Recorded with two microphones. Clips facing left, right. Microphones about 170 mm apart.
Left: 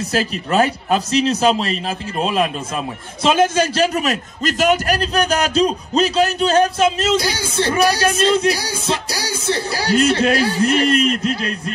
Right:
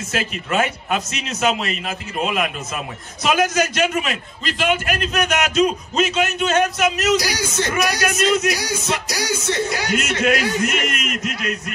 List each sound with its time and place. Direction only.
0.1 s a man's voice: 35° left (ahead or behind)